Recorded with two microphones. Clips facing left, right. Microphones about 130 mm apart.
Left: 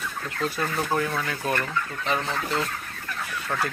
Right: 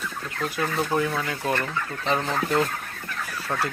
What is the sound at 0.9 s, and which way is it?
Speech, 15° right (ahead or behind).